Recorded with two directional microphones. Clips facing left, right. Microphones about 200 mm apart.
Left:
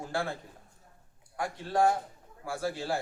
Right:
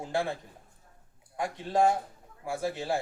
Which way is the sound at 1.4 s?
20° right (ahead or behind).